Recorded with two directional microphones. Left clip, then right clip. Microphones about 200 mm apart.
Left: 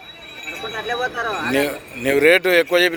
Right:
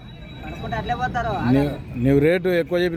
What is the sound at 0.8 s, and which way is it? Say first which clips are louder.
Speech: left 1 dB; 35° right (ahead or behind).